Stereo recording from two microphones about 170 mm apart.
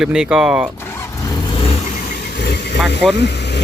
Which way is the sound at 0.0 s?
5° right (ahead or behind).